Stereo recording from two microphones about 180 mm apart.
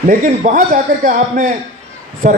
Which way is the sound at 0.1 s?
45° right (ahead or behind).